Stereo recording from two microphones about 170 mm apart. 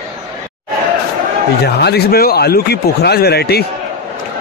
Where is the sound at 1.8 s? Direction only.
70° left (ahead or behind).